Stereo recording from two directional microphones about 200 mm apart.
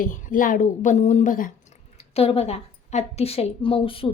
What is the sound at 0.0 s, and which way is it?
A woman's voice, 40° left (ahead or behind).